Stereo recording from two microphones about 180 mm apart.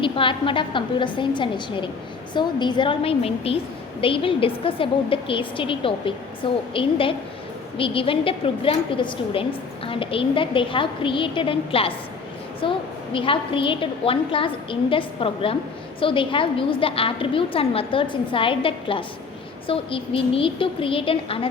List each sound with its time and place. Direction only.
0.0 s a woman's voice: 30° left (ahead or behind)